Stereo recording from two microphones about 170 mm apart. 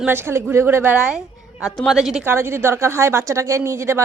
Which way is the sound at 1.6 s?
20° left (ahead or behind).